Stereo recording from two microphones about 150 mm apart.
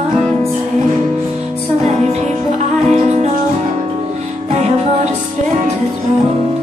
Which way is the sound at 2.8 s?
50° right (ahead or behind).